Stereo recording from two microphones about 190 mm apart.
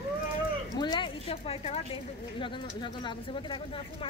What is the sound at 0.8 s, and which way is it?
A woman's voice, 25° left (ahead or behind).